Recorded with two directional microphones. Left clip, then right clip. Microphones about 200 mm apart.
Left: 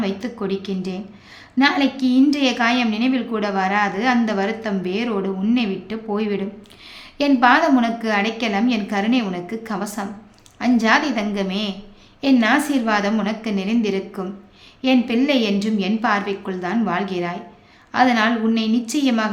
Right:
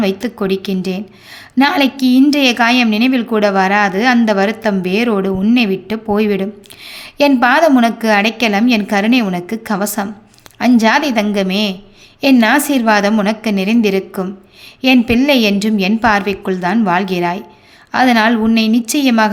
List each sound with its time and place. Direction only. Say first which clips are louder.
0.0 s a woman's voice: right 8 dB; 30° right (ahead or behind)